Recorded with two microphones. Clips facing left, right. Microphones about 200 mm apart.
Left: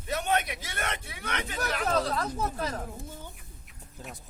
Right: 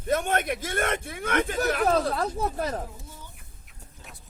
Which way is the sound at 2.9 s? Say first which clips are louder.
Left 4 dB; 55° left (ahead or behind).